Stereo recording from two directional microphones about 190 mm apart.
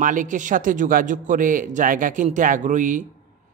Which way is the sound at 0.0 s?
45° right (ahead or behind).